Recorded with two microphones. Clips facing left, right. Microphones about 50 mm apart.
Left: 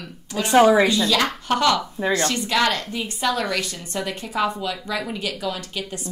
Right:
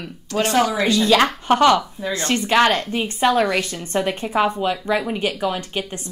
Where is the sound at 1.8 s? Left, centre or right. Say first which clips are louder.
Left 3 dB; left.